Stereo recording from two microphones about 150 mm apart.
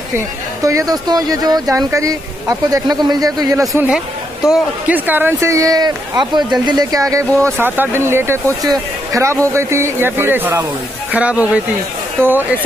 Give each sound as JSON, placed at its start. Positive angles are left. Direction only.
{"t": 0.7, "sound": "speech", "side_deg": -25}
{"t": 4.5, "sound": "speech", "side_deg": -10}